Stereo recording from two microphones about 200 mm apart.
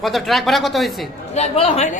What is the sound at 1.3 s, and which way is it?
Speech, 30° left (ahead or behind).